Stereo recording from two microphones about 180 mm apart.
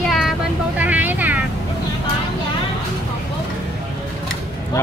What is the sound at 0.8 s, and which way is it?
Vehicle, 10° right (ahead or behind).